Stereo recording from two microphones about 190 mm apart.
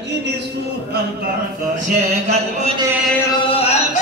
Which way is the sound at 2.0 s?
35° right (ahead or behind).